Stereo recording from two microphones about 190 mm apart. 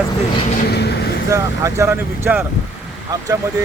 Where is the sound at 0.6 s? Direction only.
60° left (ahead or behind).